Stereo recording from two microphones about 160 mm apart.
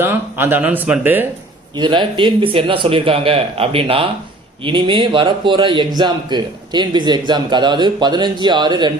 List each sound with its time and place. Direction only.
0.0 s speech: 15° right (ahead or behind)
1.7 s a man's voice: 30° right (ahead or behind)